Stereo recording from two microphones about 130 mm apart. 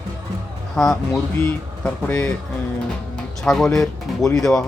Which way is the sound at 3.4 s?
5° left (ahead or behind).